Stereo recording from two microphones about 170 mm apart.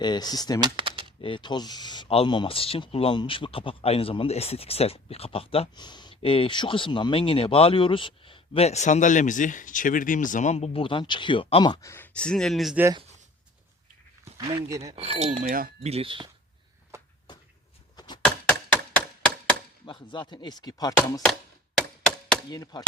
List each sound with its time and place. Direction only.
0.0 s speech: 25° left (ahead or behind)
0.6 s speech: 30° right (ahead or behind)
1.2 s speech: 30° left (ahead or behind)
12.1 s speech: 5° left (ahead or behind)
14.3 s speech: 20° right (ahead or behind)
14.9 s speech: 35° right (ahead or behind)
15.8 s speech: 35° right (ahead or behind)
16.9 s a sound: 15° right (ahead or behind)
17.9 s a sound: 25° left (ahead or behind)
19.8 s speech: 30° left (ahead or behind)
21.8 s a sound: 5° left (ahead or behind)
22.4 s speech: 25° left (ahead or behind)